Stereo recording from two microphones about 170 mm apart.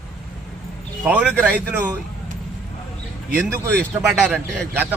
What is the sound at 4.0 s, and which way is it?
Speech, 5° right (ahead or behind).